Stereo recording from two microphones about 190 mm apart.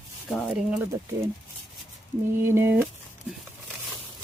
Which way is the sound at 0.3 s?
Centre (ahead or behind).